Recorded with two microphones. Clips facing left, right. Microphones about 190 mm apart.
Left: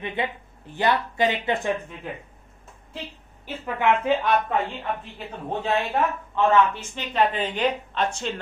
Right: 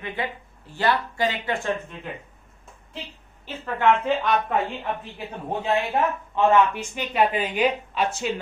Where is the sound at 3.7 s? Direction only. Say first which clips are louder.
Right 1 dB; 15° left (ahead or behind).